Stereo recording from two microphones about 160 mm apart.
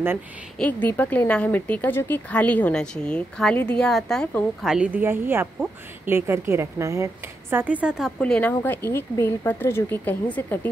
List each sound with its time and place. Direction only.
0.6 s speech: 10° left (ahead or behind)
4.6 s speech: 5° right (ahead or behind)
8.2 s speech: 10° left (ahead or behind)